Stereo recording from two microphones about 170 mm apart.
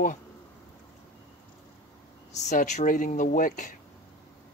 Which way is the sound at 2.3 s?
45° left (ahead or behind).